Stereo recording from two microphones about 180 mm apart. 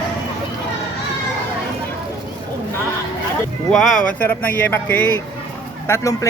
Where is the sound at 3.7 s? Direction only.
Centre (ahead or behind).